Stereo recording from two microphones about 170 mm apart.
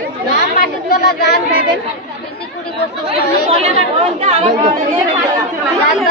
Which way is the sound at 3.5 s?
40° right (ahead or behind).